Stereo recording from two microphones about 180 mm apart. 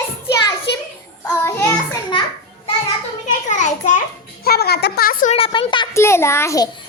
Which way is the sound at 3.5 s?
45° left (ahead or behind).